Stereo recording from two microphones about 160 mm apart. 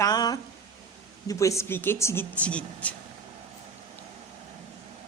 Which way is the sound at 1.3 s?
20° left (ahead or behind).